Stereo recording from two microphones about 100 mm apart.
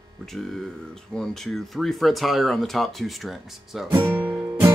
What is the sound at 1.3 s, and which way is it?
Speech, centre (ahead or behind).